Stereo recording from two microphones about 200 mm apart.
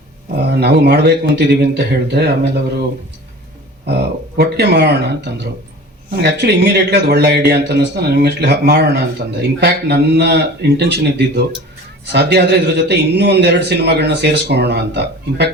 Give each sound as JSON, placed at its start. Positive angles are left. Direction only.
{"t": 0.4, "sound": "a man's voice", "side_deg": -55}
{"t": 4.4, "sound": "a man's voice", "side_deg": -55}